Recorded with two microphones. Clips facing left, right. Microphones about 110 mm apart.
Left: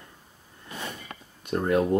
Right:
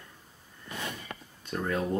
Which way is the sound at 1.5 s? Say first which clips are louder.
Left 7 dB; 15° left (ahead or behind).